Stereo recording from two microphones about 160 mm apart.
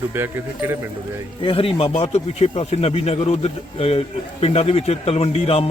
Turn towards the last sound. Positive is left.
turn(degrees=40)  # may be behind; listen again after turning